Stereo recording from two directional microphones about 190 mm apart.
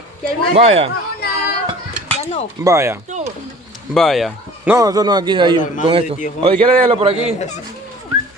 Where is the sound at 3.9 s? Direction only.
Centre (ahead or behind); by 7.3 s 30° right (ahead or behind).